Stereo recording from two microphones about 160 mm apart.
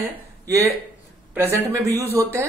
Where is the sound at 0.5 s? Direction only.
20° right (ahead or behind).